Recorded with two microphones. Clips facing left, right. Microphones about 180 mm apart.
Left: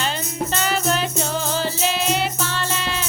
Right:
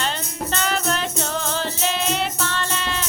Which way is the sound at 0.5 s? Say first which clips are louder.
Left 1 dB; 5° left (ahead or behind).